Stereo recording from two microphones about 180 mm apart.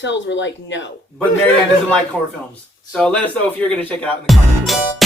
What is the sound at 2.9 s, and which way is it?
Speech, 5° left (ahead or behind).